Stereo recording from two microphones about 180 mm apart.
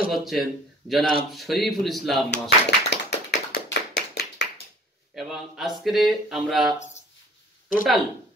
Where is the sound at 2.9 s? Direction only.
70° left (ahead or behind).